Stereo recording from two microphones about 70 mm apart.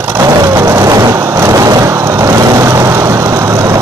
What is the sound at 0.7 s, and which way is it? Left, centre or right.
Vehicle, right.